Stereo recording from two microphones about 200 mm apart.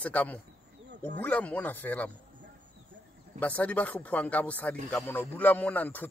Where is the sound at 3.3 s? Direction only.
5° left (ahead or behind).